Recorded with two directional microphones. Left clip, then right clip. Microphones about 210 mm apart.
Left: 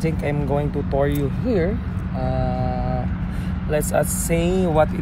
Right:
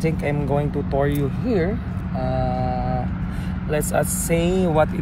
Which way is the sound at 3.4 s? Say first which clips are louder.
Left 1 dB; 5° right (ahead or behind).